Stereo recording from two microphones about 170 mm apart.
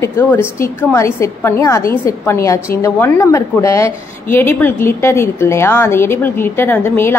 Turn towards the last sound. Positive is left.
turn(degrees=15)  # may be behind; listen again after turning